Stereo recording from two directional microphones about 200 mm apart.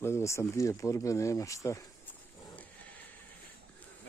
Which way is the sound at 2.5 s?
10° left (ahead or behind).